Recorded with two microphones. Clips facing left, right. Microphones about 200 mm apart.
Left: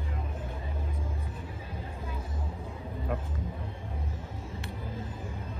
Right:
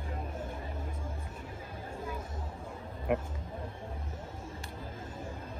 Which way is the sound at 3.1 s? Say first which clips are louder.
Right 5 dB; 15° right (ahead or behind).